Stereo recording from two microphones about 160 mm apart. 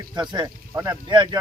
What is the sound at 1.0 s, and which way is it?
Speech, 30° right (ahead or behind).